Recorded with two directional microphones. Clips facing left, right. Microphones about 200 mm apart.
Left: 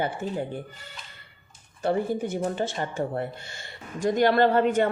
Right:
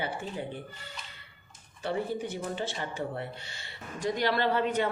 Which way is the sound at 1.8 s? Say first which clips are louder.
Left 6 dB; 45° left (ahead or behind).